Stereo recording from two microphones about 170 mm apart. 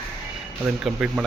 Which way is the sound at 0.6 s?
5° right (ahead or behind).